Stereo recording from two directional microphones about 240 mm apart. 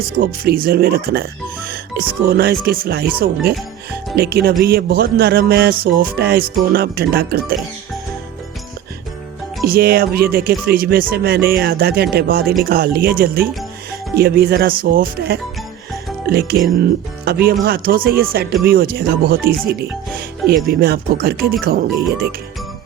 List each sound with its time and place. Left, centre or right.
0.2 s music: right
9.6 s music: right
16.2 s speech: right
16.8 s music: right